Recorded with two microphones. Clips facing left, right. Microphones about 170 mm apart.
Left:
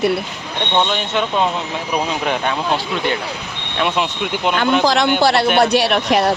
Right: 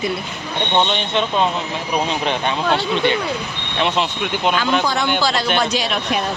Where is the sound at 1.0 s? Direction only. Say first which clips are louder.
Even; 10° left (ahead or behind).